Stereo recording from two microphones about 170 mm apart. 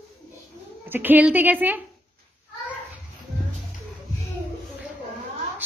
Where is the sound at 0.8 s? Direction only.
10° right (ahead or behind).